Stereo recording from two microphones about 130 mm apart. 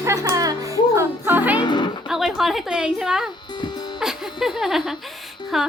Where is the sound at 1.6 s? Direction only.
35° left (ahead or behind).